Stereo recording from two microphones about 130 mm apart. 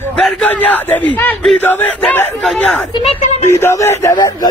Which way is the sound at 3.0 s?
65° left (ahead or behind).